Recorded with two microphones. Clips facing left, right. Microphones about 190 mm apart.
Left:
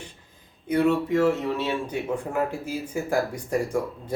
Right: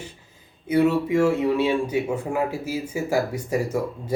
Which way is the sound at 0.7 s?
5° right (ahead or behind).